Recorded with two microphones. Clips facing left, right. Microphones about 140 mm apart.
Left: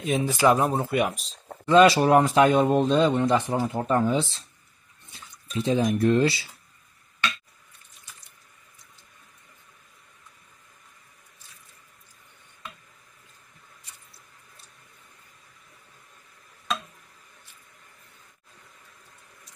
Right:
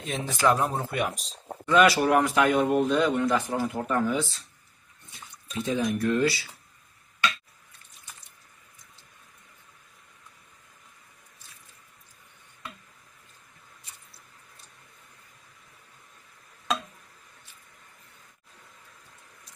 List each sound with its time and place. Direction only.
0.0 s speech: 5° left (ahead or behind)
1.7 s speech: 25° left (ahead or behind)
5.6 s speech: 30° left (ahead or behind)